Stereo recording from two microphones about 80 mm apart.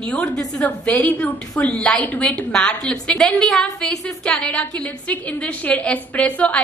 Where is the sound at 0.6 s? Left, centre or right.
Centre.